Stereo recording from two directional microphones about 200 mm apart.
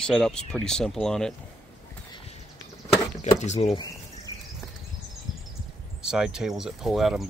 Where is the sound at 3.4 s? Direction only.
35° left (ahead or behind).